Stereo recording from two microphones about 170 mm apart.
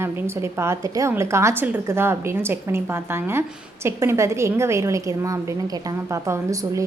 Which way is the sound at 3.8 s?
15° right (ahead or behind).